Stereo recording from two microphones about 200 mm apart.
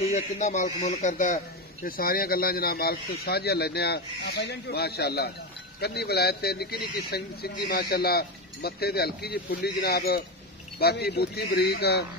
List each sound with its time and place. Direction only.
0.0 s a man's voice: 35° left (ahead or behind); by 12.1 s 55° left (ahead or behind)